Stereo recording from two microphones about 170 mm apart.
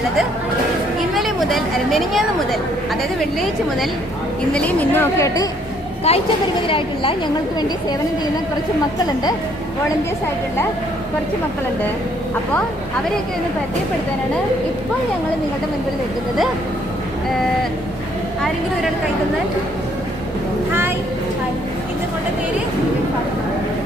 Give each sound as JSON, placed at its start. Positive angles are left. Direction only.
{"t": 1.1, "sound": "a sound", "side_deg": 0}
{"t": 4.5, "sound": "a woman's voice", "side_deg": 10}
{"t": 6.1, "sound": "speech", "side_deg": 35}